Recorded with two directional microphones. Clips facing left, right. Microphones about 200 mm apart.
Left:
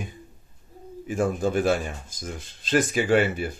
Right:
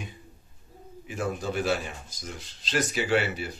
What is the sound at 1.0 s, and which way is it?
Speech, 50° left (ahead or behind).